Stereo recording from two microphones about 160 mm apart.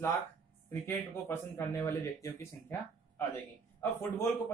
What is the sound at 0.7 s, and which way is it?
Speech, 15° left (ahead or behind).